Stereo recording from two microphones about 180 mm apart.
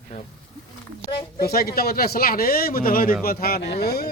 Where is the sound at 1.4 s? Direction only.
60° left (ahead or behind).